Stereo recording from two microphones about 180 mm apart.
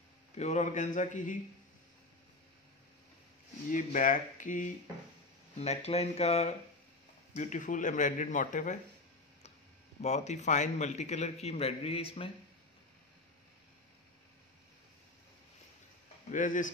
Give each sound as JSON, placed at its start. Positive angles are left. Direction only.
{"t": 0.4, "sound": "speech", "side_deg": 40}
{"t": 3.7, "sound": "speech", "side_deg": 45}
{"t": 5.6, "sound": "a man's voice", "side_deg": 35}
{"t": 10.0, "sound": "a man's voice", "side_deg": 40}
{"t": 16.3, "sound": "speech", "side_deg": 45}